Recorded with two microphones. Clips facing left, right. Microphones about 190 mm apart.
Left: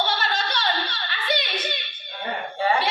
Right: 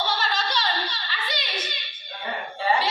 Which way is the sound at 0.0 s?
60° left (ahead or behind).